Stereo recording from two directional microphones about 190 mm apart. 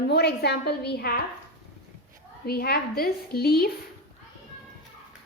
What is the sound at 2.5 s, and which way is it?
A woman's voice, 55° left (ahead or behind).